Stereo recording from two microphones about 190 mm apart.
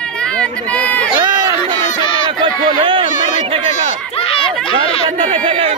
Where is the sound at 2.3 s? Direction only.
25° right (ahead or behind).